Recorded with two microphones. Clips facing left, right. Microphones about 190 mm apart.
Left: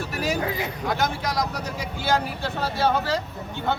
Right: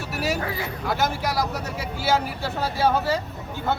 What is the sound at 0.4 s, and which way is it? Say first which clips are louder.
Speech: left 2 dB; 20° left (ahead or behind).